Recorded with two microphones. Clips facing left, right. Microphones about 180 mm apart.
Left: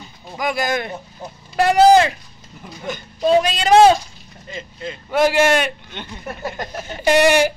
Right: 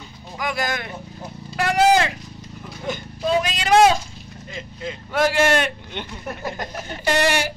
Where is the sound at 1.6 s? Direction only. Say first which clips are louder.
Left 5 dB; 35° left (ahead or behind).